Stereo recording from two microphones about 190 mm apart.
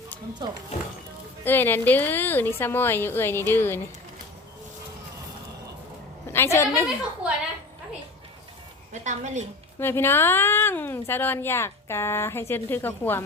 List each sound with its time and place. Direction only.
0.4 s speech: 25° right (ahead or behind)
1.5 s speech: 10° left (ahead or behind)
6.3 s a woman's voice: 15° left (ahead or behind)
8.9 s a woman's voice: 40° right (ahead or behind)
9.8 s speech: 10° left (ahead or behind)